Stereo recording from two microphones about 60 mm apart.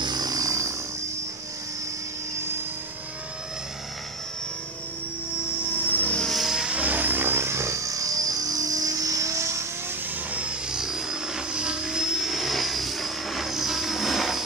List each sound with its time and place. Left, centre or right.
0.2 s helicopter: right
5.8 s aircraft: left
6.2 s vehicle: centre
6.5 s vehicle: centre
6.8 s vehicle: right
10.3 s vehicle: centre
10.8 s vehicle: centre